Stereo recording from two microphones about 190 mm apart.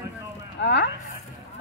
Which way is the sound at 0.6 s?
65° left (ahead or behind).